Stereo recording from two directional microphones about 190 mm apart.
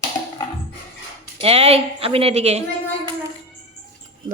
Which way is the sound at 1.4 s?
30° right (ahead or behind).